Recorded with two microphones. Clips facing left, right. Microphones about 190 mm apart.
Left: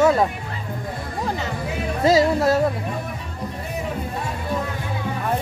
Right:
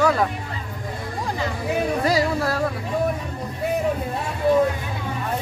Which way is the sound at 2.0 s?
25° left (ahead or behind).